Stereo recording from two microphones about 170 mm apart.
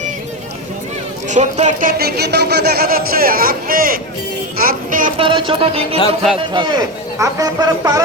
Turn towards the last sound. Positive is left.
turn(degrees=-20)  # may be behind; listen again after turning